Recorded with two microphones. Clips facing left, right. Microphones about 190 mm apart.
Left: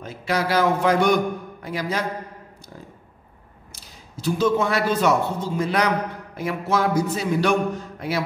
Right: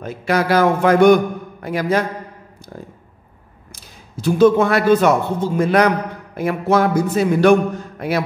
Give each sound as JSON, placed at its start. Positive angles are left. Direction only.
{"t": 0.0, "sound": "a man's voice", "side_deg": -55}
{"t": 3.7, "sound": "a man's voice", "side_deg": -55}